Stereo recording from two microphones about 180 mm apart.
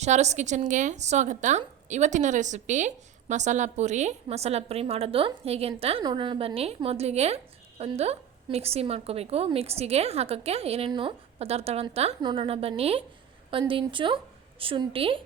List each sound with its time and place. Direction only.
0.0 s a woman's voice: 40° right (ahead or behind)